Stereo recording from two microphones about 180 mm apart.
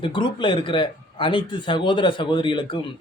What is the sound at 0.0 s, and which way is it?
A man's voice, 25° left (ahead or behind).